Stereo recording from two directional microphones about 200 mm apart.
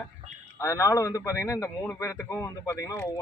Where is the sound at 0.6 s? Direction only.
15° left (ahead or behind).